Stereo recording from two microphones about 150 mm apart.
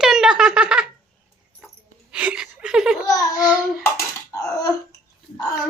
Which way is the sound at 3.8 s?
20° left (ahead or behind).